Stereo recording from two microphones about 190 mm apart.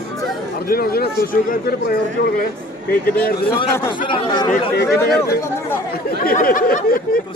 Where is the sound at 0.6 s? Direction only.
50° left (ahead or behind).